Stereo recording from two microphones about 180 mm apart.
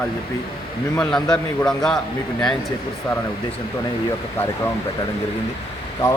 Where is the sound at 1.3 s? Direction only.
5° left (ahead or behind).